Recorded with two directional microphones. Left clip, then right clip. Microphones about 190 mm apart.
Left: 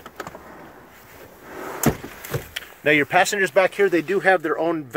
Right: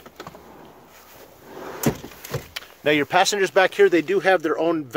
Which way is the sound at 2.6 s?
10° right (ahead or behind).